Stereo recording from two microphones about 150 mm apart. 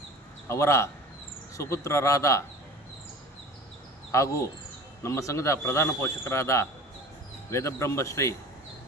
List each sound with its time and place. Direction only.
0.4 s a man's voice: 20° left (ahead or behind)
4.1 s speech: 20° left (ahead or behind)